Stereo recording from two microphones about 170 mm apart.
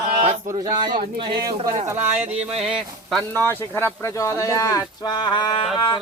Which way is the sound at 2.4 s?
35° right (ahead or behind).